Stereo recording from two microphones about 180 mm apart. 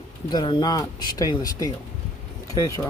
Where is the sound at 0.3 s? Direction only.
25° left (ahead or behind).